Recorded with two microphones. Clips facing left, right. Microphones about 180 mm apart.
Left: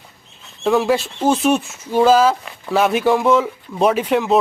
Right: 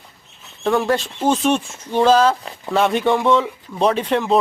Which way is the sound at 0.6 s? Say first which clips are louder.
Left 2 dB; 5° left (ahead or behind).